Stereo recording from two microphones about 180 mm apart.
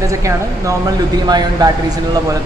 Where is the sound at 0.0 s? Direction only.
20° right (ahead or behind).